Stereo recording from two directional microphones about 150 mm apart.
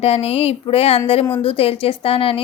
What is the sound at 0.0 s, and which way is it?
A woman's voice, 40° left (ahead or behind).